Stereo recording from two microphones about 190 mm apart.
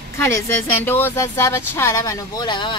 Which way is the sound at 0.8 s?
10° left (ahead or behind).